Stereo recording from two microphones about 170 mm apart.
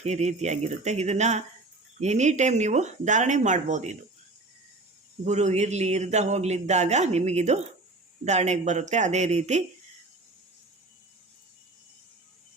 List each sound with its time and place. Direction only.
0.0 s a man's voice: 40° right (ahead or behind)
5.2 s a man's voice: 40° right (ahead or behind)